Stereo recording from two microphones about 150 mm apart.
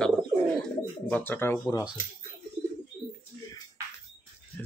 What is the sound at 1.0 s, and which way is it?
Speech, 10° left (ahead or behind).